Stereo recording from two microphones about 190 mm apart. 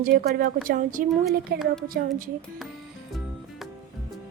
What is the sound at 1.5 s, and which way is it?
Speech, 55° right (ahead or behind).